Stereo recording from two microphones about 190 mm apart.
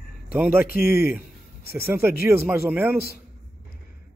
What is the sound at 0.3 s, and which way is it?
Speech, 10° right (ahead or behind).